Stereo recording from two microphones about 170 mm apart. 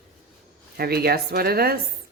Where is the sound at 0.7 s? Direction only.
65° right (ahead or behind).